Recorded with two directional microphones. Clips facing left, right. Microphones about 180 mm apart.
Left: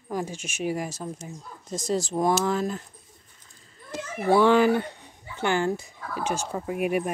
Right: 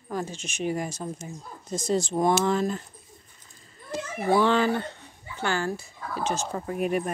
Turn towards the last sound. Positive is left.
turn(degrees=10)  # may be behind; listen again after turning